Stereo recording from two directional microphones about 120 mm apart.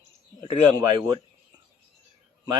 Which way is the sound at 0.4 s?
35° right (ahead or behind).